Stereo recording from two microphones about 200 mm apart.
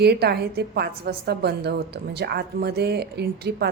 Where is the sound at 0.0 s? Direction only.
55° right (ahead or behind).